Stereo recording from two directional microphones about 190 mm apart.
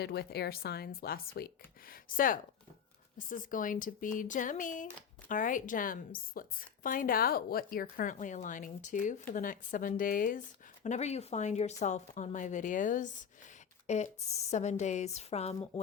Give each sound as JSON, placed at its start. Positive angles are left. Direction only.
{"t": 0.0, "sound": "a woman's voice", "side_deg": 60}